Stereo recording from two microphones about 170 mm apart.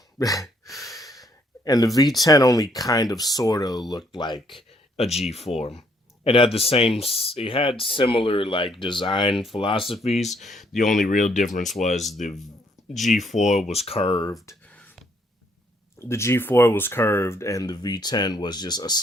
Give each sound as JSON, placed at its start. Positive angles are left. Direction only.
{"t": 0.2, "sound": "speech", "side_deg": 20}
{"t": 1.1, "sound": "a sound", "side_deg": 20}
{"t": 2.2, "sound": "speech", "side_deg": 20}
{"t": 4.4, "sound": "a sound", "side_deg": 35}
{"t": 5.5, "sound": "speech", "side_deg": 35}
{"t": 10.2, "sound": "speech", "side_deg": 0}
{"t": 10.9, "sound": "speech", "side_deg": 50}
{"t": 12.9, "sound": "speech", "side_deg": 0}
{"t": 13.4, "sound": "speech", "side_deg": 40}
{"t": 14.4, "sound": "a sound", "side_deg": 10}
{"t": 16.0, "sound": "speech", "side_deg": 15}